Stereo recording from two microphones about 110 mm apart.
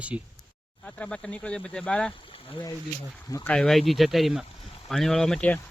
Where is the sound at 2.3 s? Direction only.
50° left (ahead or behind).